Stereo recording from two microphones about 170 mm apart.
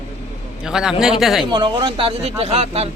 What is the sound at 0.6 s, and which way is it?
Speech, 5° right (ahead or behind).